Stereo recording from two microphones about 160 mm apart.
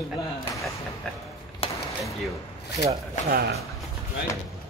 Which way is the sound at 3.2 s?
50° left (ahead or behind).